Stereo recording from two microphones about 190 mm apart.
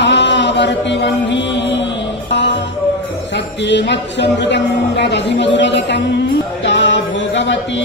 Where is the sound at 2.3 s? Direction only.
70° left (ahead or behind).